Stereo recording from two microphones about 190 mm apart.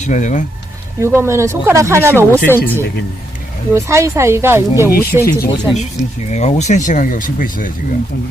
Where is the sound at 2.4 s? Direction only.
10° left (ahead or behind).